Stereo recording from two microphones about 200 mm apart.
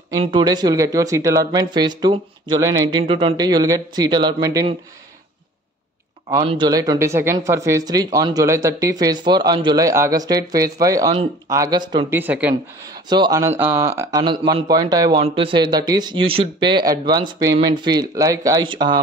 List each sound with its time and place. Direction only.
0.2 s speech: 25° right (ahead or behind)
6.4 s speech: 25° right (ahead or behind)
12.2 s speech: 10° right (ahead or behind)
13.1 s speech: 20° right (ahead or behind)